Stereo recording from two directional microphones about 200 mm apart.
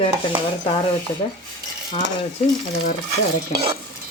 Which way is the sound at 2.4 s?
30° left (ahead or behind).